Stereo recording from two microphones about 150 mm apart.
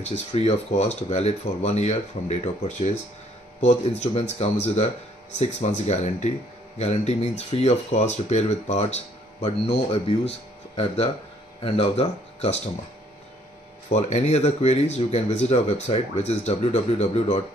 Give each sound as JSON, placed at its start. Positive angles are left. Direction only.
{"t": 0.0, "sound": "speech", "side_deg": 45}
{"t": 11.6, "sound": "speech", "side_deg": 40}
{"t": 13.8, "sound": "speech", "side_deg": 45}